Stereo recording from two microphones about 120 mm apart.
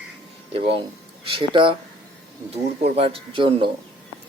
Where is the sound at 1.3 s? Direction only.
45° right (ahead or behind).